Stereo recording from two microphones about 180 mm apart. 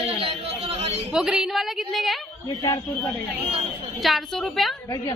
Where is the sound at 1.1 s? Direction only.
5° right (ahead or behind).